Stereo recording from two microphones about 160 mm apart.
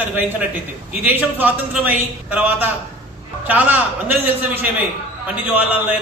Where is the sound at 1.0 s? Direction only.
10° right (ahead or behind).